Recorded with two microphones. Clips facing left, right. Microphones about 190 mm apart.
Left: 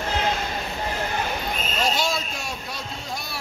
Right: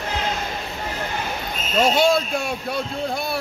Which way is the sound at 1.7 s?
60° right (ahead or behind).